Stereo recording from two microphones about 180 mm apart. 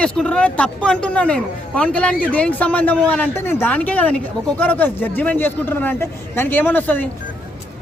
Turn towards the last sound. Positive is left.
turn(degrees=10)  # may be behind; listen again after turning